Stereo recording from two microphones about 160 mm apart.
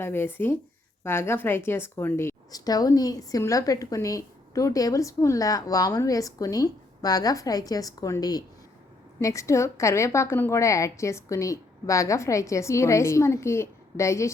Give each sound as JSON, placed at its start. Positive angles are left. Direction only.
{"t": 0.0, "sound": "a woman's voice", "side_deg": 15}